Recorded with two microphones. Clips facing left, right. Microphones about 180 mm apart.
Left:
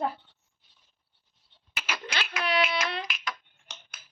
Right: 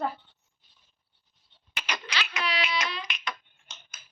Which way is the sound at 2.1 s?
50° left (ahead or behind).